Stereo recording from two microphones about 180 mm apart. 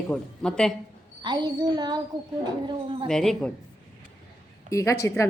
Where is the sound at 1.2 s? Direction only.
25° right (ahead or behind).